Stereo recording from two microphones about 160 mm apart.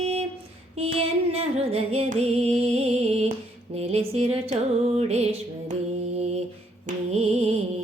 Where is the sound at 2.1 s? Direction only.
40° right (ahead or behind).